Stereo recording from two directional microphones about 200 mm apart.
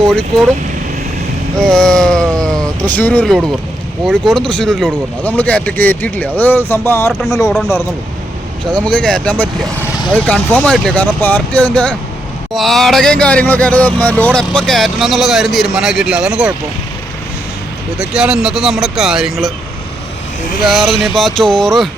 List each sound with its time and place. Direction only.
1.5 s speech: 5° left (ahead or behind)
8.7 s speech: 5° left (ahead or behind)
17.9 s speech: 5° right (ahead or behind)
20.6 s speech: centre (ahead or behind)